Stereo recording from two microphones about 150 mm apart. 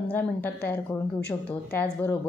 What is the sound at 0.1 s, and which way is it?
A woman's voice, 10° left (ahead or behind).